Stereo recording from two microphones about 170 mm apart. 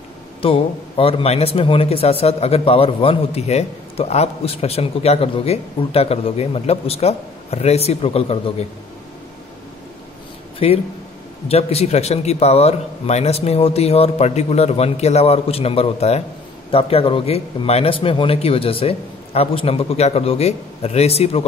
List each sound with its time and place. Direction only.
0.4 s a man's voice: 30° left (ahead or behind)
10.6 s a man's voice: 35° left (ahead or behind)